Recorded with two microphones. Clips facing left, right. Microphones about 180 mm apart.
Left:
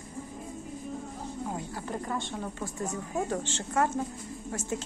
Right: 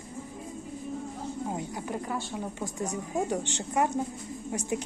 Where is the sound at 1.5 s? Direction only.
15° right (ahead or behind).